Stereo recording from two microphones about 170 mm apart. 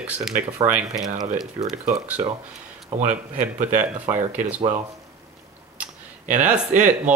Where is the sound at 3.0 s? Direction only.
45° right (ahead or behind).